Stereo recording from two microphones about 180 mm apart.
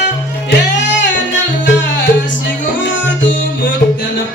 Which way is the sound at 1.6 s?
90° left.